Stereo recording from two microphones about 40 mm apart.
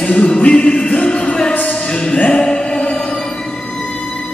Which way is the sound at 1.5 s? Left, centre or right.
Left.